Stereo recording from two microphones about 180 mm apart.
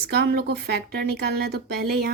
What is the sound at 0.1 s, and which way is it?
Speech, 65° right (ahead or behind).